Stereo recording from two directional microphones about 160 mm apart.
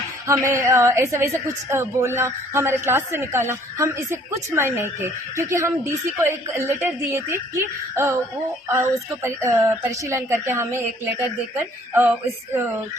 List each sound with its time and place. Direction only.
0.3 s a woman's voice: 15° right (ahead or behind)